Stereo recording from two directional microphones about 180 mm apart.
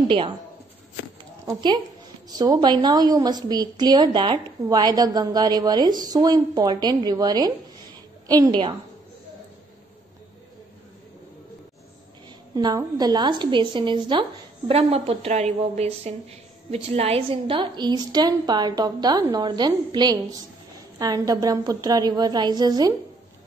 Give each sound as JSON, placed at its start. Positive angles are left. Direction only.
{"t": 1.5, "sound": "a woman's voice", "side_deg": -25}
{"t": 12.5, "sound": "a woman's voice", "side_deg": -20}